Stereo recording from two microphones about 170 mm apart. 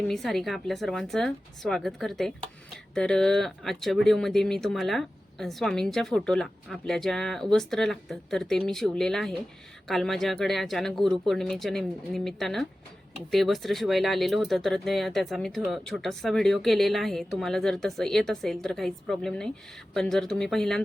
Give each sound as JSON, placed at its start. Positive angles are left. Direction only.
{"t": 0.1, "sound": "speech", "side_deg": 0}